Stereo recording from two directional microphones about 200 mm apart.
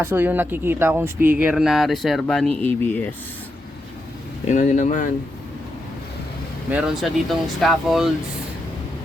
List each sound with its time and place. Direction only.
0.0 s speech: 10° right (ahead or behind); by 3.1 s 10° left (ahead or behind)
4.4 s speech: 35° left (ahead or behind)
6.7 s speech: 5° right (ahead or behind)